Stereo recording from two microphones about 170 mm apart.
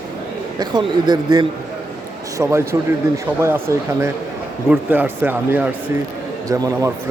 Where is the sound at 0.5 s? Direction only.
25° right (ahead or behind).